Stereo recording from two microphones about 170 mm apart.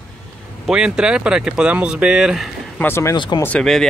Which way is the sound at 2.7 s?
15° left (ahead or behind).